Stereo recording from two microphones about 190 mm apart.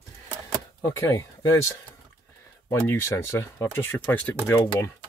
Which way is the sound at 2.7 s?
15° left (ahead or behind).